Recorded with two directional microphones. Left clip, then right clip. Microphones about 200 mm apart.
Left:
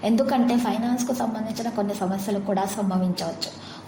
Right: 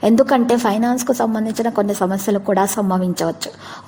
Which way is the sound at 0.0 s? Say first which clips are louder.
Right 8 dB; 45° right (ahead or behind).